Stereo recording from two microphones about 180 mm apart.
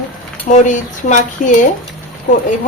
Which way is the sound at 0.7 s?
45° left (ahead or behind).